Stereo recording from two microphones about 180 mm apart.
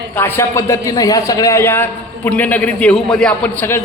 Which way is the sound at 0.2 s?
15° left (ahead or behind).